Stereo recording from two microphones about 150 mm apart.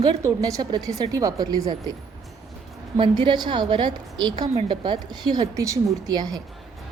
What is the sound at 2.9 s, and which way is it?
A woman's voice, 30° right (ahead or behind).